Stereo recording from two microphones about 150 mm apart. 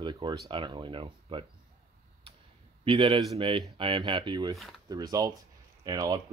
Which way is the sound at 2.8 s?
35° right (ahead or behind).